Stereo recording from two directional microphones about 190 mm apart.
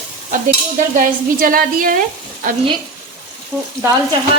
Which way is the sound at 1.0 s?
45° right (ahead or behind).